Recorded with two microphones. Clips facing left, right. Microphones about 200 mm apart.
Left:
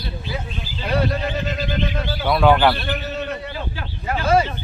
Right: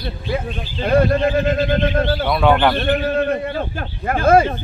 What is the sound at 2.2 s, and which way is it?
Speech, centre (ahead or behind).